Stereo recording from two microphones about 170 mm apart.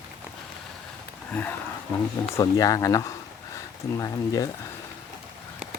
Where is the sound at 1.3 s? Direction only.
10° left (ahead or behind).